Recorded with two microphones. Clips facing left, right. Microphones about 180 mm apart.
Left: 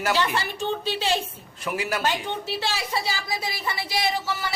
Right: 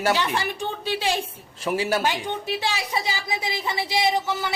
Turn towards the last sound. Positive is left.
turn(degrees=-20)  # may be behind; listen again after turning